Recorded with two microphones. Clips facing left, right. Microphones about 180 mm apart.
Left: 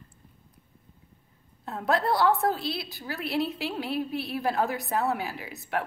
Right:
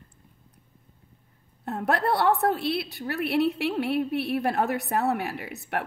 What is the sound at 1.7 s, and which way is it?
A woman's voice, 65° right (ahead or behind).